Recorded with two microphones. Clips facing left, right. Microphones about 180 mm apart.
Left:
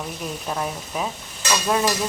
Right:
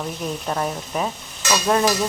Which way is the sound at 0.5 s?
Centre (ahead or behind).